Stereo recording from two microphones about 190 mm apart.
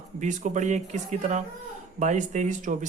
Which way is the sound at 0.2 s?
40° right (ahead or behind).